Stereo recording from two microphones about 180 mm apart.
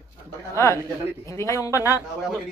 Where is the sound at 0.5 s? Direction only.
15° left (ahead or behind).